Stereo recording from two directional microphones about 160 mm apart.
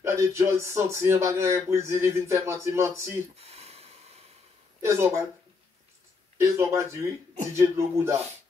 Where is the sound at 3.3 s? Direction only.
40° right (ahead or behind).